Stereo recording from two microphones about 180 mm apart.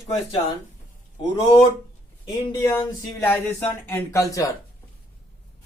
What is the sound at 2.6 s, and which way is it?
Speech, 10° left (ahead or behind).